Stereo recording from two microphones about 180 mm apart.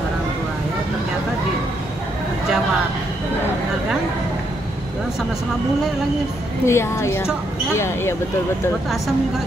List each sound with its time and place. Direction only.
6.6 s a woman's voice: 15° left (ahead or behind)